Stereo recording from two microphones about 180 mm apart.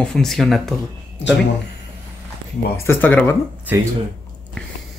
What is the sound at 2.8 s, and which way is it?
Speech, 10° left (ahead or behind).